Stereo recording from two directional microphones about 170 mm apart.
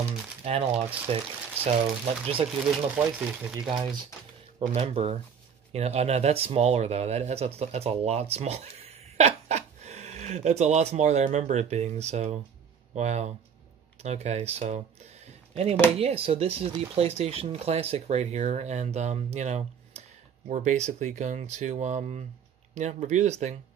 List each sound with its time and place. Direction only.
0.5 s speech: 35° right (ahead or behind)
2.7 s speech: 5° right (ahead or behind)
4.6 s speech: 35° right (ahead or behind)